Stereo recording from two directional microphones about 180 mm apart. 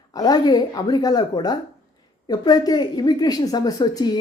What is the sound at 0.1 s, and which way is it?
A woman's voice, 20° left (ahead or behind).